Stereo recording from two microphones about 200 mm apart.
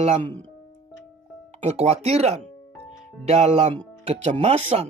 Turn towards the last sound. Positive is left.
turn(degrees=-35)  # may be behind; listen again after turning